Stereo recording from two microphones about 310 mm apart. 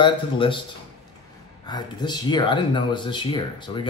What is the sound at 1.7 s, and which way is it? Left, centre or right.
Speech, centre.